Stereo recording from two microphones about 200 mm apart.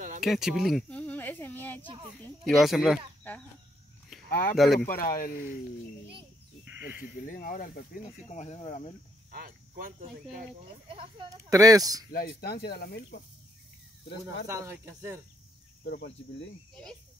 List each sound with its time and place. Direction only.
0.2 s a sound: centre (ahead or behind)
2.4 s speech: centre (ahead or behind)
4.3 s speech: 45° left (ahead or behind)
7.0 s speech: 45° left (ahead or behind)
9.3 s cricket: 45° right (ahead or behind)
10.3 s speech: 25° right (ahead or behind)
12.1 s speech: 50° left (ahead or behind)
14.2 s speech: 15° right (ahead or behind)
15.8 s speech: 55° left (ahead or behind)